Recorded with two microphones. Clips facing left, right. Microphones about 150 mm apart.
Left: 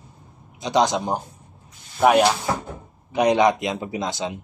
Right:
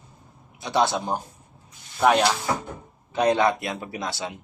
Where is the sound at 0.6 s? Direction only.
15° left (ahead or behind).